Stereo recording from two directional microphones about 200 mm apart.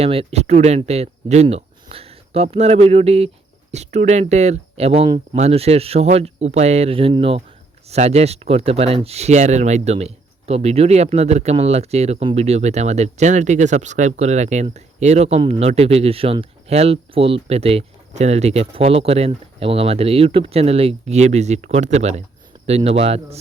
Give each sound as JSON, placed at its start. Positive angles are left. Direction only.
{"t": 0.0, "sound": "speech", "side_deg": -30}